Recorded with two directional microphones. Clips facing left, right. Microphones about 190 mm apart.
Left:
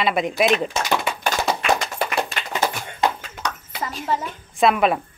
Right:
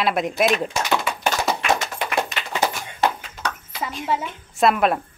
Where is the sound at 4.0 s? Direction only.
5° right (ahead or behind).